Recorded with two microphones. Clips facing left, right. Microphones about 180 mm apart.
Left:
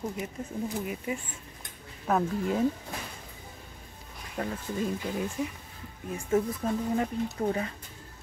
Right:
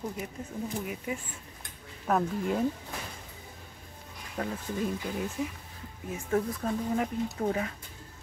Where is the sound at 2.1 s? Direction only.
Centre (ahead or behind).